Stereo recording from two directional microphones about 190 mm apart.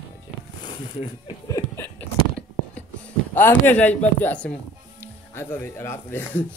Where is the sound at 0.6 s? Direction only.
25° left (ahead or behind).